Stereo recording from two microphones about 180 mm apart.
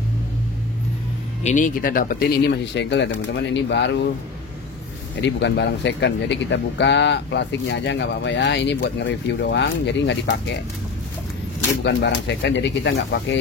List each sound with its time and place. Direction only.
1.4 s speech: 45° left (ahead or behind); by 4.0 s 75° left (ahead or behind)
5.2 s speech: 80° left
11.8 s speech: 75° left (ahead or behind)